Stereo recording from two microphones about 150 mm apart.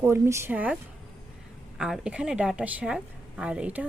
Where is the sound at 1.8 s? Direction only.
5° right (ahead or behind).